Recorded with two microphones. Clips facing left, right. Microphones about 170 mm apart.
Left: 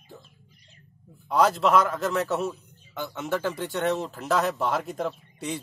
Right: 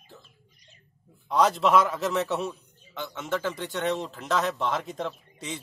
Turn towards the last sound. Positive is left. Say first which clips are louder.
# left 4 dB
turn(degrees=5)  # may be behind; listen again after turning